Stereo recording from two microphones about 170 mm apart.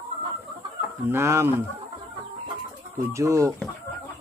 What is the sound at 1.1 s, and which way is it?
Speech, 15° right (ahead or behind).